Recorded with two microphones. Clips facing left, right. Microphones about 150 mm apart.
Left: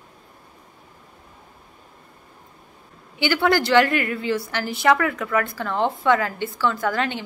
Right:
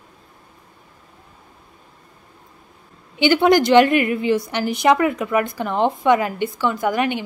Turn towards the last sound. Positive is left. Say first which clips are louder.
# right 4 dB
turn(degrees=-15)  # may be behind; listen again after turning